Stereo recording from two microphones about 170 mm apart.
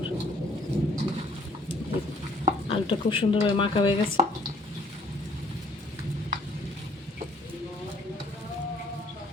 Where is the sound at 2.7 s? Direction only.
30° left (ahead or behind).